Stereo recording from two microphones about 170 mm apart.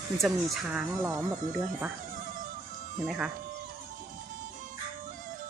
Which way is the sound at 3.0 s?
5° right (ahead or behind).